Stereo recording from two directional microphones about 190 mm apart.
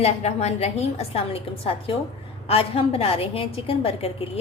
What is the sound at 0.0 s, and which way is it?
A woman's voice, 35° left (ahead or behind).